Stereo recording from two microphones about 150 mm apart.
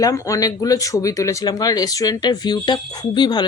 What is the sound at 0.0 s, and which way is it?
Speech, 20° left (ahead or behind).